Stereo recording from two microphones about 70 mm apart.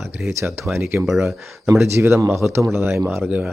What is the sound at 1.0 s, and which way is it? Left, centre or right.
Speech, centre.